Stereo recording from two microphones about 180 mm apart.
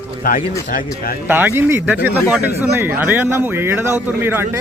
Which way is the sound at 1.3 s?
10° right (ahead or behind).